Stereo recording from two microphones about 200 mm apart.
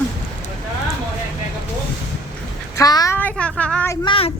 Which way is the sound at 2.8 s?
20° left (ahead or behind).